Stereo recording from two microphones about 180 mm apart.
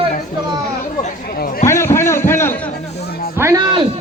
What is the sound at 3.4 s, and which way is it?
Music, 20° right (ahead or behind).